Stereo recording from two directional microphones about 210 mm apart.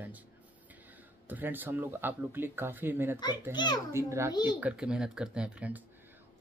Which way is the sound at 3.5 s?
20° left (ahead or behind).